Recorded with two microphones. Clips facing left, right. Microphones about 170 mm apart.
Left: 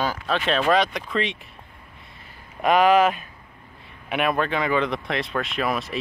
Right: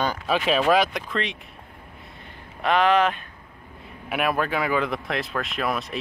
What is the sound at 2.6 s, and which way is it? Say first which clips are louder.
Speech: left 3 dB; 10° left (ahead or behind).